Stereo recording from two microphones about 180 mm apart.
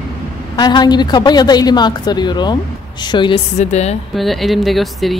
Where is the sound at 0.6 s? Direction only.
25° left (ahead or behind).